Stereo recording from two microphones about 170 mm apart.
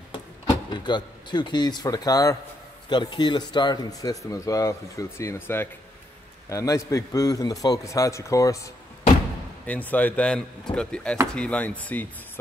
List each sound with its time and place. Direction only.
0.7 s speech: 25° left (ahead or behind); by 12.1 s 10° left (ahead or behind)